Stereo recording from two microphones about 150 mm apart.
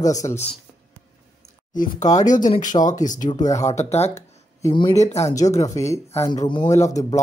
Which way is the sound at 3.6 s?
50° left (ahead or behind).